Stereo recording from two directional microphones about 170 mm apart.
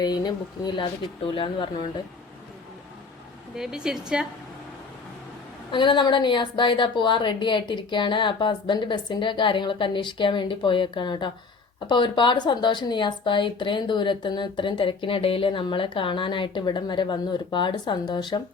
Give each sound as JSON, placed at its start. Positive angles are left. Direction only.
{"t": 0.0, "sound": "speech", "side_deg": 25}
{"t": 3.5, "sound": "a woman's voice", "side_deg": -5}
{"t": 5.7, "sound": "speech", "side_deg": 25}